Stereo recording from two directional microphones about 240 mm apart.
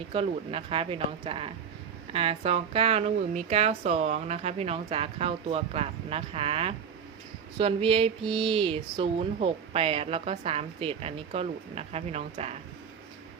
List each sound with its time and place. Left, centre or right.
0.1 s speech: right